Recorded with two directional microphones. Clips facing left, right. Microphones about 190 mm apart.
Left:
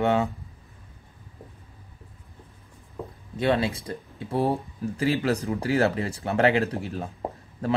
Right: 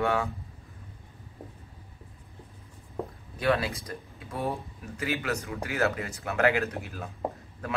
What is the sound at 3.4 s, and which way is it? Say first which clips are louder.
Speech: left 3 dB; 25° left (ahead or behind).